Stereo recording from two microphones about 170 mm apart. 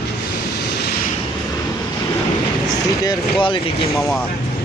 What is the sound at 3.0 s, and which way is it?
Speech, 30° left (ahead or behind).